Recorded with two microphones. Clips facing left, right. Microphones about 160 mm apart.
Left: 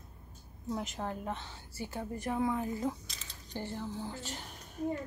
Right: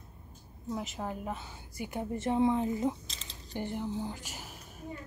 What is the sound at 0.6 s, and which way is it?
A woman's voice, centre (ahead or behind).